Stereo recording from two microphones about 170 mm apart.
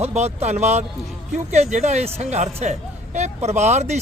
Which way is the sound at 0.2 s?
40° right (ahead or behind).